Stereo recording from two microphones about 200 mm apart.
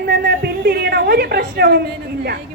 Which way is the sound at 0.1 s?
55° right (ahead or behind).